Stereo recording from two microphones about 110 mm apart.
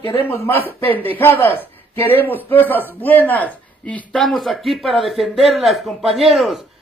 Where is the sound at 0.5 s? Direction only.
20° left (ahead or behind).